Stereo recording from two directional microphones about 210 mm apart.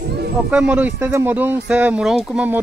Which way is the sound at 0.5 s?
5° right (ahead or behind).